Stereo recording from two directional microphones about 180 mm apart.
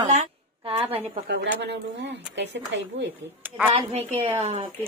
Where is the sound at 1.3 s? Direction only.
75° right (ahead or behind).